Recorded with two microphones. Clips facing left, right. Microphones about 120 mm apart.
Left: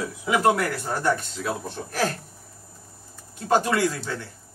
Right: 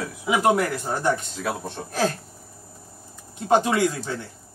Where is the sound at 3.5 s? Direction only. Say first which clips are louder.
Right 2 dB; 20° right (ahead or behind).